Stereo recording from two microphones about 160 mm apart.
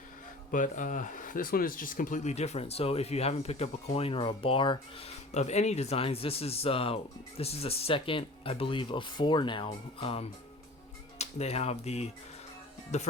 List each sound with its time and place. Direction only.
0.5 s speech: 55° left (ahead or behind)